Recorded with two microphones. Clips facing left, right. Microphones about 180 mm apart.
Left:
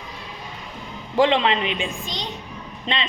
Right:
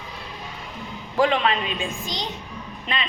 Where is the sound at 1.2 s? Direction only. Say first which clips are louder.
Left 2 dB; 25° left (ahead or behind).